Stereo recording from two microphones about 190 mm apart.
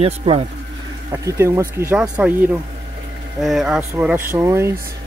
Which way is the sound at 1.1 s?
15° right (ahead or behind).